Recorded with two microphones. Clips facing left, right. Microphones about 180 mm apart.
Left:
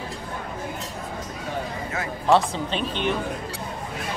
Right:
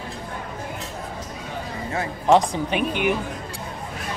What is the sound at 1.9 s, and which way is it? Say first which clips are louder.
Music: right 3 dB; 30° right (ahead or behind).